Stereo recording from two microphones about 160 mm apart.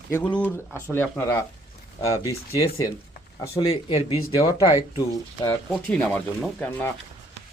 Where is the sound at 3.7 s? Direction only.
35° left (ahead or behind).